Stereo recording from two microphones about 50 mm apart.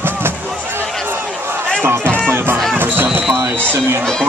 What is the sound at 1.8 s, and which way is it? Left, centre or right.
Music, right.